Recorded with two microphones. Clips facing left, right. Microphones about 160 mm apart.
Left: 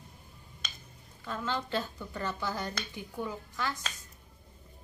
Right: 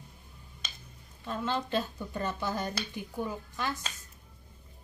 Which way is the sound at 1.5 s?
20° right (ahead or behind).